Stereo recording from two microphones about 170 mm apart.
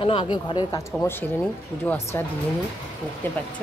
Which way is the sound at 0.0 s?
30° left (ahead or behind).